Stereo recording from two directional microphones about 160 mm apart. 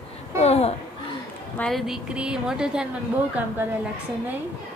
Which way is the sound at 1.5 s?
5° left (ahead or behind).